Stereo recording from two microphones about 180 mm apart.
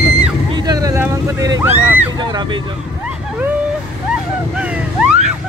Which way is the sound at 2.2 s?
25° right (ahead or behind).